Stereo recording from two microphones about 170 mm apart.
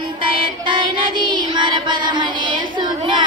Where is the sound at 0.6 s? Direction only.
25° right (ahead or behind).